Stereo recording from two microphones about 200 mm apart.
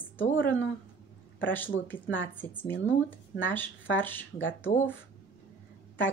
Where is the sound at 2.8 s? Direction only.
75° left (ahead or behind).